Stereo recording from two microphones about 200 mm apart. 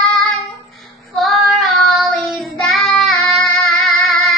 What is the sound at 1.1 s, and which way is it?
Child singing, centre (ahead or behind).